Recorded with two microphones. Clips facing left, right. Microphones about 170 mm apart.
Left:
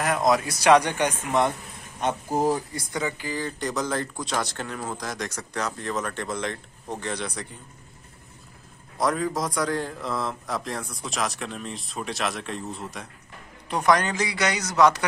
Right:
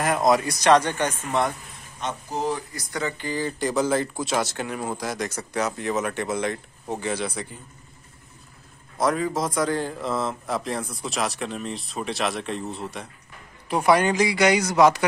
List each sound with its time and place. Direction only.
0.0 s speech: centre (ahead or behind)
0.7 s a man's voice: 15° left (ahead or behind)
2.3 s speech: 45° left (ahead or behind)
2.7 s speech: 25° left (ahead or behind)
3.0 s speech: 10° left (ahead or behind)
8.9 s a man's voice: centre (ahead or behind)